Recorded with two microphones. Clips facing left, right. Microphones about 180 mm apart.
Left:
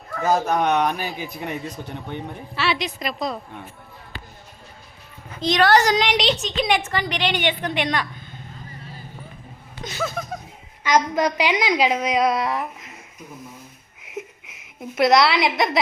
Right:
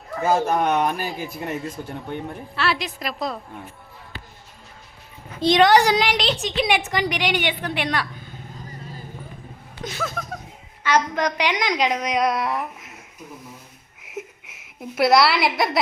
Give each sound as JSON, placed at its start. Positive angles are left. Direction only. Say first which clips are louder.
{"t": 0.2, "sound": "a woman's voice", "louder": "even", "side_deg": -10}
{"t": 5.4, "sound": "a child's voice", "louder": "right 4 dB", "side_deg": -30}
{"t": 5.6, "sound": "a woman's voice", "louder": "left 2 dB", "side_deg": -10}
{"t": 9.8, "sound": "a sound", "louder": "left 2 dB", "side_deg": 0}
{"t": 10.8, "sound": "speech", "louder": "left 2 dB", "side_deg": 10}
{"t": 14.0, "sound": "a sound", "louder": "left 1 dB", "side_deg": -5}